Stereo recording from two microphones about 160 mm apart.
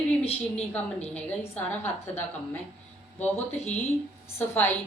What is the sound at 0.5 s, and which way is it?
A woman's voice, 10° left (ahead or behind).